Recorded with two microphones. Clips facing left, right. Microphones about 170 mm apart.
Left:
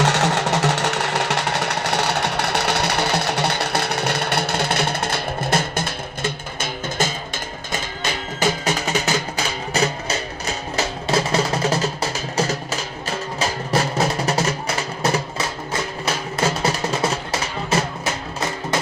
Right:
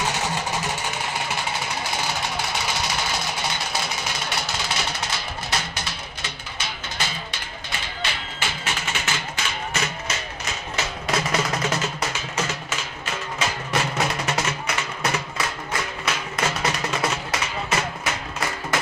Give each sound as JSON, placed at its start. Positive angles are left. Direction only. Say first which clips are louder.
{"t": 0.0, "sound": "music", "louder": "left 7 dB", "side_deg": 75}